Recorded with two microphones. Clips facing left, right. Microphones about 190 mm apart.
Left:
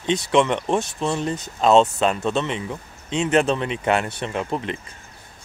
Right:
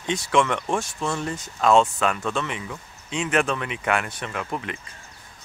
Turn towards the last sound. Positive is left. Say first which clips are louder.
# left 5 dB
turn(degrees=25)  # may be behind; listen again after turning